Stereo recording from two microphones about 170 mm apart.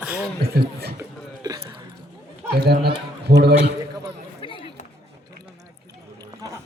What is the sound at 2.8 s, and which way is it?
Speech, 75° right (ahead or behind).